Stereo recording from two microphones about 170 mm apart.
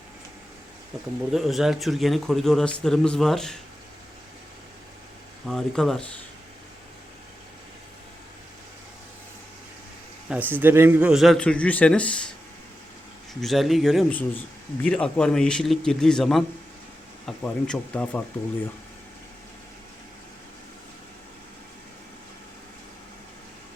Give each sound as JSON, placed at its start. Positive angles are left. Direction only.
{"t": 1.3, "sound": "speech", "side_deg": 0}
{"t": 5.5, "sound": "speech", "side_deg": 0}
{"t": 10.2, "sound": "speech", "side_deg": -10}
{"t": 13.4, "sound": "speech", "side_deg": 0}